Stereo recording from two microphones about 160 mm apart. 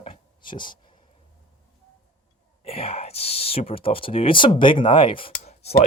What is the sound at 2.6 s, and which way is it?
Speech, 35° left (ahead or behind).